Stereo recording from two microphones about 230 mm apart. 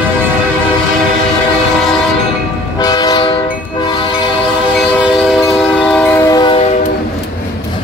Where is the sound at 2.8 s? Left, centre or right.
Centre.